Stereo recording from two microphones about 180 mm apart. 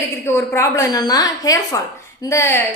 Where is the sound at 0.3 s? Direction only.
15° left (ahead or behind).